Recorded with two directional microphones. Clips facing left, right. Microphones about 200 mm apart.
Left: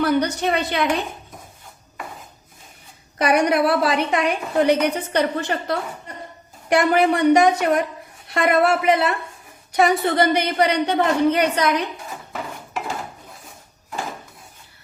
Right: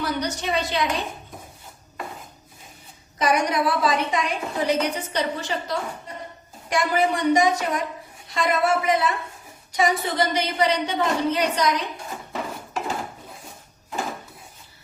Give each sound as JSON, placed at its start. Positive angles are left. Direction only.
{"t": 0.0, "sound": "a woman's voice", "side_deg": 60}
{"t": 3.2, "sound": "a woman's voice", "side_deg": 65}